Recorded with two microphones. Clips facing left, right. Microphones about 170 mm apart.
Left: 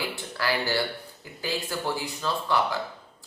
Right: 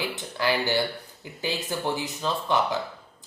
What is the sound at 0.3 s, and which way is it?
A man's voice, 20° right (ahead or behind).